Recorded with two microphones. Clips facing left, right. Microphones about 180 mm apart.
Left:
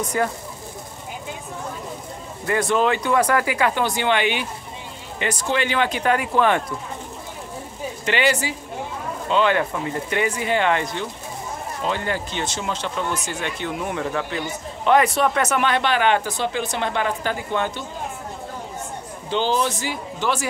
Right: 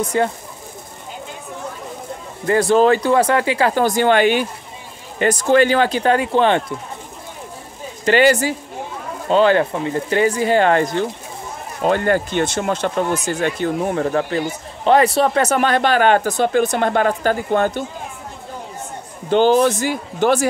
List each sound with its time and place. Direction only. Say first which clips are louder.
0.1 s speech: right 4 dB; 25° right (ahead or behind)
2.4 s speech: right 6 dB; 35° right (ahead or behind)
8.0 s speech: right 8 dB; 40° right (ahead or behind)
19.2 s speech: right 8 dB; 50° right (ahead or behind)